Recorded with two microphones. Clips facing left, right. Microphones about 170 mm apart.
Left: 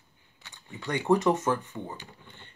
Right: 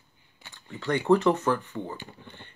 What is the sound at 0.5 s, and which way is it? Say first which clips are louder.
Speech: right 4 dB; 15° left (ahead or behind).